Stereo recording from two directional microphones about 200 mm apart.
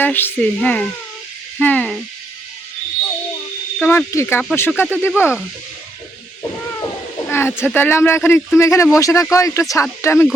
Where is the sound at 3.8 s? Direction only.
10° left (ahead or behind).